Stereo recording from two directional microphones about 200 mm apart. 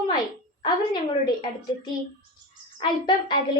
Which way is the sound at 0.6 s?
25° left (ahead or behind).